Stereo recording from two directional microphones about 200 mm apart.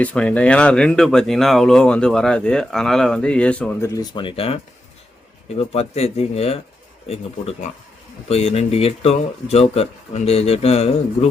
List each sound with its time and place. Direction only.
0.0 s speech: 5° left (ahead or behind); by 11.3 s 30° left (ahead or behind)